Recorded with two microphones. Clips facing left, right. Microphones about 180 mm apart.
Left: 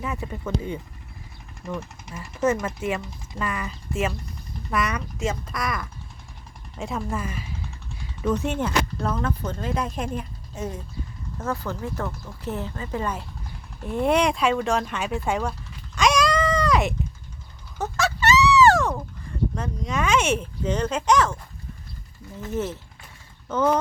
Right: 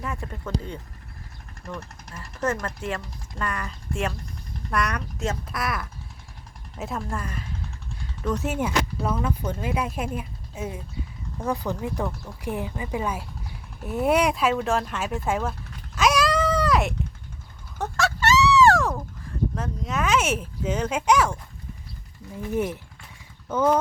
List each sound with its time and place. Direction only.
0.0 s speech: 5° left (ahead or behind)
16.0 s a sound: 5° right (ahead or behind)
22.4 s speech: 15° right (ahead or behind)